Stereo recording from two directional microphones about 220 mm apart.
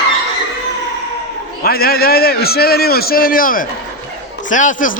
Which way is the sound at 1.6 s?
45° left (ahead or behind).